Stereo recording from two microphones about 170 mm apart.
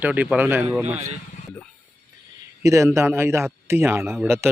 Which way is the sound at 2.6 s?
15° right (ahead or behind).